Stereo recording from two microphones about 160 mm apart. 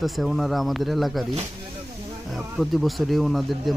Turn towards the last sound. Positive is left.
turn(degrees=0)  # may be behind; listen again after turning